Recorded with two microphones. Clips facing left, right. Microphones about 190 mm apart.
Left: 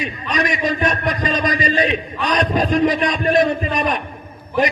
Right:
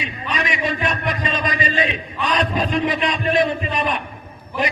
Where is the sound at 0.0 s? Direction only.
40° left (ahead or behind).